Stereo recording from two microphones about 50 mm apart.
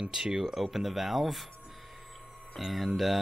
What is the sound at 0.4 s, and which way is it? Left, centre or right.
Speech, centre.